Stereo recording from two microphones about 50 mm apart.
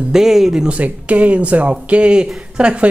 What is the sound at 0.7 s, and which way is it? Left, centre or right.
Speech, right.